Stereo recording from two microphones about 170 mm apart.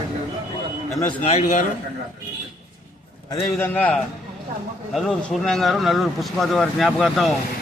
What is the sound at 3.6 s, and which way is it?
A man's voice, 10° left (ahead or behind).